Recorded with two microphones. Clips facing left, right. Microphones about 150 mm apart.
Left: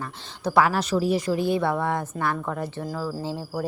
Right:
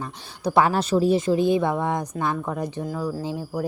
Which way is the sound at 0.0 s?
20° right (ahead or behind).